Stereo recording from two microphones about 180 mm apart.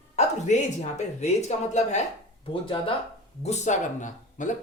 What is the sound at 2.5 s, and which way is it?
Speech, 30° left (ahead or behind).